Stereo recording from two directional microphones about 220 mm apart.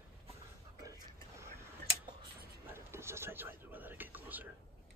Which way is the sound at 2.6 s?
10° right (ahead or behind).